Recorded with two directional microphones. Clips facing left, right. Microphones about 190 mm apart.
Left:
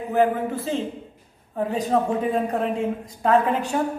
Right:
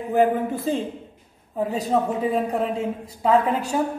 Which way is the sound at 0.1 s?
15° right (ahead or behind).